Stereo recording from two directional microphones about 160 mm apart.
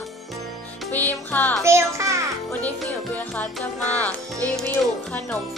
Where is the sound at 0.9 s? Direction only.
10° left (ahead or behind).